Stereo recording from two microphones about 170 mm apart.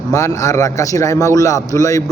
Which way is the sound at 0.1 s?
20° left (ahead or behind).